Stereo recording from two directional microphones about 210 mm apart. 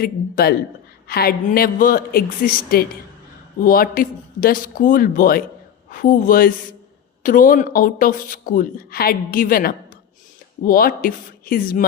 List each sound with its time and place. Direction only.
0.0 s speech: 45° left (ahead or behind)